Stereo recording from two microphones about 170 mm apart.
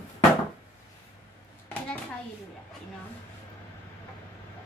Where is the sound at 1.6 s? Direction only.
10° left (ahead or behind).